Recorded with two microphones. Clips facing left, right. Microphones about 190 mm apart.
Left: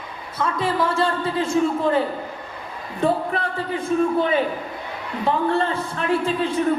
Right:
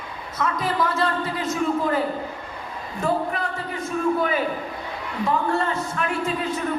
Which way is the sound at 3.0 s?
30° left (ahead or behind).